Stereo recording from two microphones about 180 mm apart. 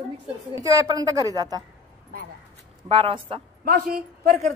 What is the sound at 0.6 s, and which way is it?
A woman's voice, 20° right (ahead or behind).